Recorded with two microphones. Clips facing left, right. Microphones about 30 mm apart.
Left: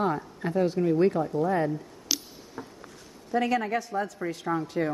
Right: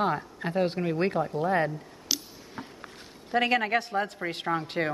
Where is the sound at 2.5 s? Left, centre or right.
Right.